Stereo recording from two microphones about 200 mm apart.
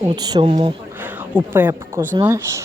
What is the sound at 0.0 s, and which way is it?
Speech, 20° right (ahead or behind).